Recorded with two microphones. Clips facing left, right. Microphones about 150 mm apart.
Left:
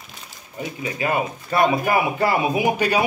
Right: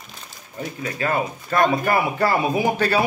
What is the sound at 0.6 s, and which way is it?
Speech, 15° left (ahead or behind).